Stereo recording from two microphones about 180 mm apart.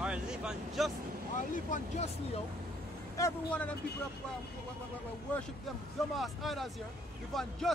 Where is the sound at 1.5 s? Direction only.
40° left (ahead or behind).